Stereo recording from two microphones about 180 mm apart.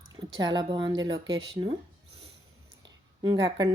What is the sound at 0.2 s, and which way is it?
A woman's voice, 25° right (ahead or behind).